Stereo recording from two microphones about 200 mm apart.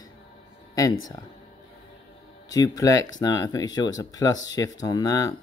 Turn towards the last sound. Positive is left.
turn(degrees=15)  # may be behind; listen again after turning